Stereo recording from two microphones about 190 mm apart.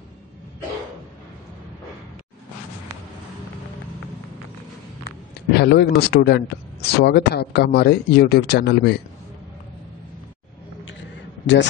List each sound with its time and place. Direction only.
5.5 s speech: 60° left (ahead or behind)